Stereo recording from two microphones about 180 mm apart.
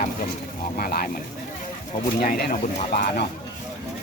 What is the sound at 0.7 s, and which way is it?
Speech, 55° left (ahead or behind).